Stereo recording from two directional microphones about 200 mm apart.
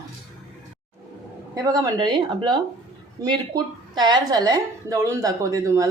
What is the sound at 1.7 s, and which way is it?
A woman's voice, 20° right (ahead or behind).